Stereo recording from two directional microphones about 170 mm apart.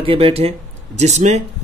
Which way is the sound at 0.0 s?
35° right (ahead or behind).